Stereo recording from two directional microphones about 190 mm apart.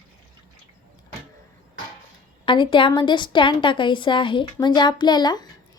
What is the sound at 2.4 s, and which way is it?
A woman's voice, 25° left (ahead or behind).